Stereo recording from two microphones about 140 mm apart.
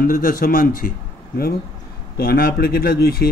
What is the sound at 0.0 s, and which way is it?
Speech, 90° left.